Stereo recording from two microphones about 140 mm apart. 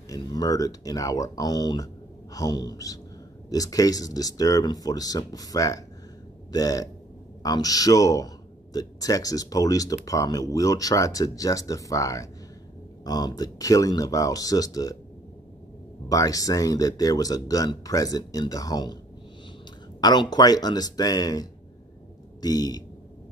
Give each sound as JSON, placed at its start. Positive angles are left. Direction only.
{"t": 0.1, "sound": "speech", "side_deg": 25}
{"t": 16.1, "sound": "speech", "side_deg": 25}
{"t": 20.0, "sound": "speech", "side_deg": 30}